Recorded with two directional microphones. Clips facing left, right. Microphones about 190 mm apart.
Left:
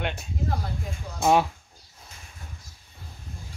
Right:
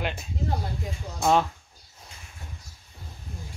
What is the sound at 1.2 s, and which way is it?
Speech, 10° left (ahead or behind).